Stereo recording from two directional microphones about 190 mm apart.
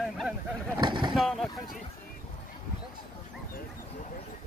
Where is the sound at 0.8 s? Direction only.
25° right (ahead or behind).